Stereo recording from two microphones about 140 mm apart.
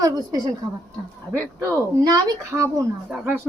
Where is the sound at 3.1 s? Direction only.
5° right (ahead or behind).